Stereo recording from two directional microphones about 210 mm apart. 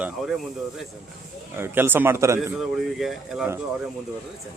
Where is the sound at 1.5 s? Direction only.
10° right (ahead or behind).